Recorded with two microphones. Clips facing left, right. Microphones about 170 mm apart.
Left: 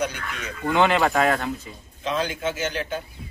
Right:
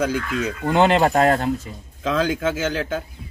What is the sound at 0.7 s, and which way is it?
Speech, 35° right (ahead or behind).